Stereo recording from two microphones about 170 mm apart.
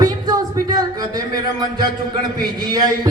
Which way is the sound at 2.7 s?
25° right (ahead or behind).